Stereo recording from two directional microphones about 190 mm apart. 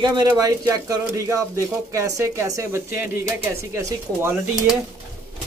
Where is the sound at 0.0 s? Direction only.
20° right (ahead or behind).